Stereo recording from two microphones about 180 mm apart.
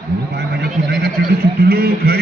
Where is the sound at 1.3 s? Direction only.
60° right (ahead or behind).